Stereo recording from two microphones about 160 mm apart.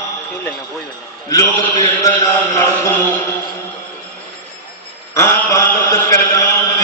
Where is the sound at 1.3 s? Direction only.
25° left (ahead or behind).